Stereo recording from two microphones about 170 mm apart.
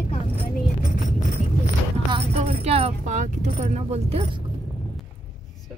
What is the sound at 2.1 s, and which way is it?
Speech, 35° right (ahead or behind).